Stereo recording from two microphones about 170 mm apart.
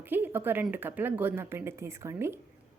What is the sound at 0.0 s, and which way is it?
A woman's voice, 10° right (ahead or behind).